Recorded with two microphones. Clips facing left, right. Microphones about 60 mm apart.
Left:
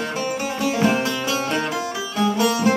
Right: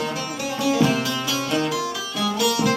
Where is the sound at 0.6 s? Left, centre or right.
Left.